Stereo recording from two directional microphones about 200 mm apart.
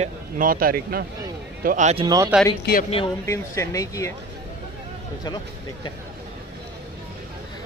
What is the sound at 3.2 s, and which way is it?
Speech, 15° left (ahead or behind).